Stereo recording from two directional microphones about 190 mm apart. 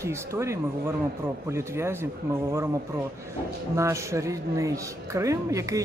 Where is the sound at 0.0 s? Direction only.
15° right (ahead or behind).